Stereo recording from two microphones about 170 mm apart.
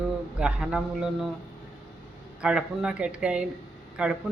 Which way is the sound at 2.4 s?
5° right (ahead or behind).